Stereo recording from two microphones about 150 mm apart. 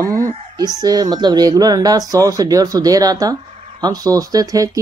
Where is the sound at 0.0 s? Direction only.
25° right (ahead or behind).